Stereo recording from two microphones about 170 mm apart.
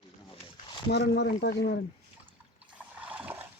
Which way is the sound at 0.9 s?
80° left.